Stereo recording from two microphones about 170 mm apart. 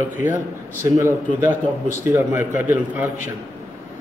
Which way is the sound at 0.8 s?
15° right (ahead or behind).